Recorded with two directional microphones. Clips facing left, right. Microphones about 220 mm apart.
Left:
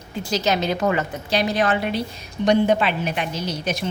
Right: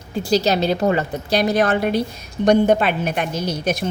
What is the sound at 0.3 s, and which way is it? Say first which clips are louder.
A woman's voice: right 4 dB; 35° right (ahead or behind).